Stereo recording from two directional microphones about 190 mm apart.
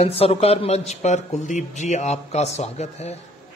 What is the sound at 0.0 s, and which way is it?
A man's voice, 30° left (ahead or behind).